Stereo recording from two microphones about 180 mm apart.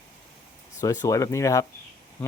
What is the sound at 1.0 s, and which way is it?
Speech, 15° left (ahead or behind).